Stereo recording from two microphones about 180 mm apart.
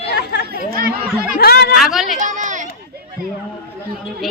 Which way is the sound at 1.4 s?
60° left (ahead or behind).